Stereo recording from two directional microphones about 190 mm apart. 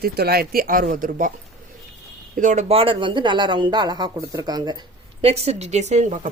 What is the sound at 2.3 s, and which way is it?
Speech, 40° right (ahead or behind).